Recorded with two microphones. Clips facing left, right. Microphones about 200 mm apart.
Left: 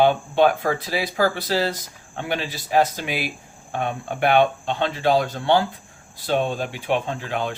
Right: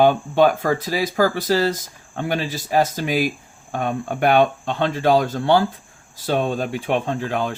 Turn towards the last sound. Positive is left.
turn(degrees=-45)  # may be behind; listen again after turning